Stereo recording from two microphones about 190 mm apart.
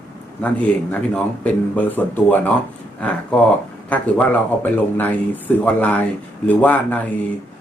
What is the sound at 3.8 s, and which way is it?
Speech, 10° left (ahead or behind).